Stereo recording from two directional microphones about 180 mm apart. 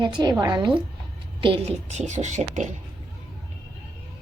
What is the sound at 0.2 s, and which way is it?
A woman's voice, 20° right (ahead or behind).